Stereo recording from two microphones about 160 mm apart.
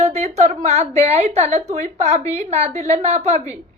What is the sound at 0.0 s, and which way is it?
A woman's voice, 45° right (ahead or behind).